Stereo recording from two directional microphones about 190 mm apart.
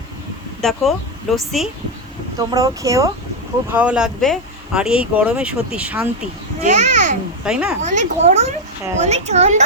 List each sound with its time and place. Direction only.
0.6 s speech: centre (ahead or behind)
2.4 s speech: 20° right (ahead or behind)
6.6 s a child's voice: 35° right (ahead or behind)
7.4 s speech: 5° right (ahead or behind)
7.8 s a child's voice: 40° right (ahead or behind)